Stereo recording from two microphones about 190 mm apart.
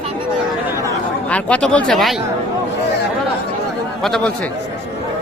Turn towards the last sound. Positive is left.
turn(degrees=5)  # may be behind; listen again after turning